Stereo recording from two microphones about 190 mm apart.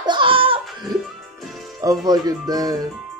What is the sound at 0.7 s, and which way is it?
Music, centre (ahead or behind).